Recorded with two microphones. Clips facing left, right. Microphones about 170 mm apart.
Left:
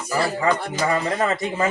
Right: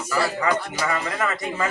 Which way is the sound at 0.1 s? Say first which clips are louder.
Left 2 dB; 30° left (ahead or behind).